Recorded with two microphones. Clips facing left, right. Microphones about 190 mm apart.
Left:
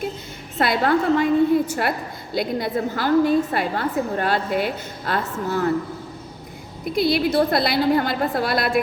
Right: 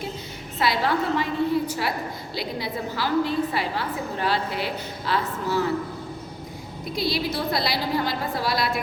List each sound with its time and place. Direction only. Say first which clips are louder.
0.6 s a woman's voice: left 4 dB; 55° left (ahead or behind)
6.8 s a woman's voice: left 7 dB; 55° left (ahead or behind)